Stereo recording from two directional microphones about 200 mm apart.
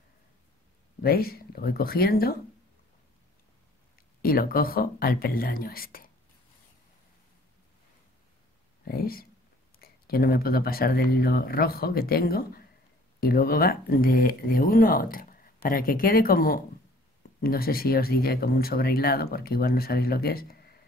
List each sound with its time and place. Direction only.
1.0 s speech: 50° left (ahead or behind)
4.2 s speech: 45° left (ahead or behind)
8.8 s speech: 50° left (ahead or behind)